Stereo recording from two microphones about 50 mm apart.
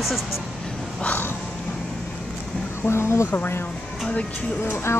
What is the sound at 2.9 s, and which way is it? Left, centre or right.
Speech, left.